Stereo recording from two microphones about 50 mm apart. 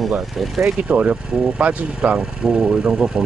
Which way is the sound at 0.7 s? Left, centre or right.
Right.